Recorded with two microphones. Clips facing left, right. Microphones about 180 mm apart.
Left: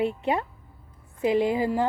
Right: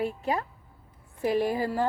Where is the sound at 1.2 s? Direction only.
20° left (ahead or behind).